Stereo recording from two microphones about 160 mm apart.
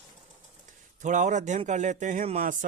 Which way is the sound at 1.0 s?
50° right (ahead or behind).